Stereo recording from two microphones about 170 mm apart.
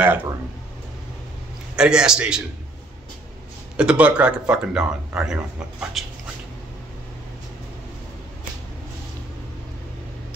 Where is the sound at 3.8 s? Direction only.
5° right (ahead or behind).